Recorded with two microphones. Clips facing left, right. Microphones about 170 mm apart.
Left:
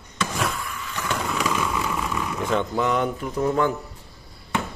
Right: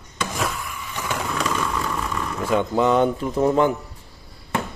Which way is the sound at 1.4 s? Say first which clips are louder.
Right 1 dB; 10° left (ahead or behind).